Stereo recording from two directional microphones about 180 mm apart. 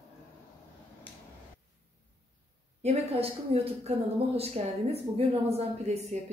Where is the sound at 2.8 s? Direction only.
35° right (ahead or behind).